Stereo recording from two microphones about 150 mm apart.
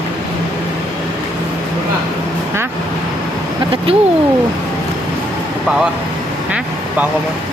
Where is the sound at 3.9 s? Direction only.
40° right (ahead or behind).